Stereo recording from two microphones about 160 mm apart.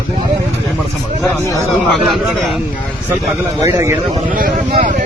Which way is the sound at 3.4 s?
20° right (ahead or behind).